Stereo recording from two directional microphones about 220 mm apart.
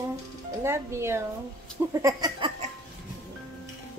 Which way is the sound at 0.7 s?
10° right (ahead or behind).